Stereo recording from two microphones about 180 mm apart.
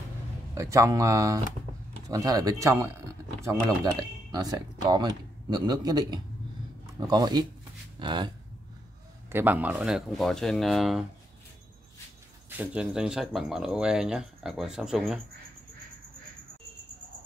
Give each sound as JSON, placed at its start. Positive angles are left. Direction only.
{"t": 0.6, "sound": "speech", "side_deg": -15}
{"t": 9.3, "sound": "speech", "side_deg": -10}
{"t": 12.4, "sound": "speech", "side_deg": -5}